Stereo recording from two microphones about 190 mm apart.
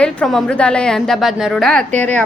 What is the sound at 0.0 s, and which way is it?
A woman's voice, 5° left (ahead or behind).